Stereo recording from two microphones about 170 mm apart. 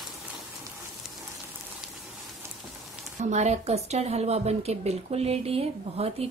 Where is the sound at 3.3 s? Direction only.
40° right (ahead or behind).